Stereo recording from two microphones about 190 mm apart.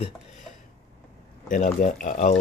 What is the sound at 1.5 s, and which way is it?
Speech, 40° left (ahead or behind).